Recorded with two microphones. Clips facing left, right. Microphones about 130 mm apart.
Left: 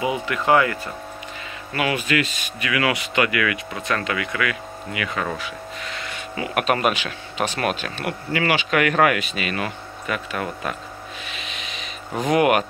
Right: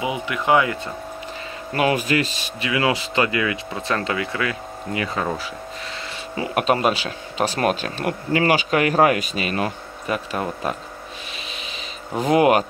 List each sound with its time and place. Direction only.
0.0 s speech: 15° right (ahead or behind)
1.7 s speech: 40° right (ahead or behind)
6.3 s speech: 30° right (ahead or behind)
12.3 s speech: 30° right (ahead or behind)